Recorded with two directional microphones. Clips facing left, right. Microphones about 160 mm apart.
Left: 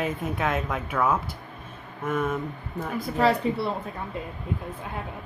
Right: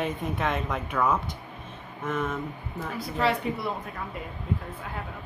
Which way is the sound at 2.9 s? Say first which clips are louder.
Left 4 dB; 45° left (ahead or behind).